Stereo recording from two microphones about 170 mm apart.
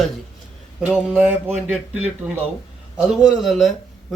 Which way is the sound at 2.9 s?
Centre (ahead or behind).